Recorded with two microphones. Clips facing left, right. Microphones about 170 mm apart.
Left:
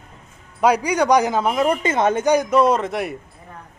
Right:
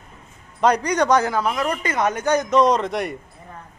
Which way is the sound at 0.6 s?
10° left (ahead or behind).